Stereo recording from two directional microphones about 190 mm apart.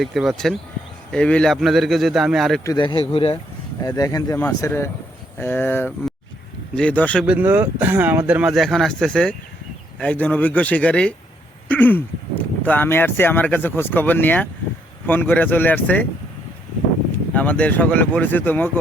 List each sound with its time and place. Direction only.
0.0 s a man's voice: centre (ahead or behind)
2.6 s speech: 25° left (ahead or behind); by 7.3 s 5° left (ahead or behind)
7.3 s speech: 10° right (ahead or behind); by 16.0 s 10° left (ahead or behind)
17.1 s speech: 10° left (ahead or behind)